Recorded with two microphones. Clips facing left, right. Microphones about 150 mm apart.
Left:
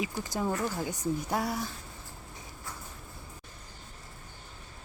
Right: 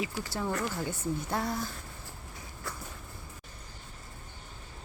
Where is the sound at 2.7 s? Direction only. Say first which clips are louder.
Right 3 dB; 75° right (ahead or behind).